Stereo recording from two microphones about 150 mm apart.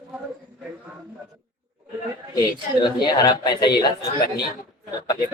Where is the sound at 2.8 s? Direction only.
30° left (ahead or behind).